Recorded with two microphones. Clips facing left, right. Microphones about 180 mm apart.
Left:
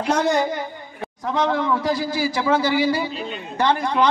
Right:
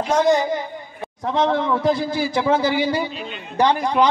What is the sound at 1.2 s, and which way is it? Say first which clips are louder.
A man's voice: right 2 dB; 25° right (ahead or behind).